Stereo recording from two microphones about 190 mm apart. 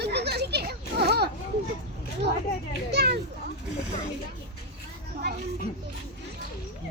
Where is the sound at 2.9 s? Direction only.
60° right (ahead or behind).